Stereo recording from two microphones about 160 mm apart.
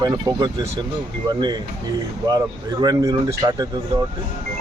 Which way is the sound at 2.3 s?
25° right (ahead or behind).